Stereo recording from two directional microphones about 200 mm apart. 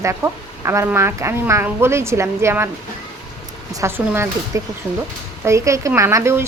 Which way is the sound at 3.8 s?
10° right (ahead or behind).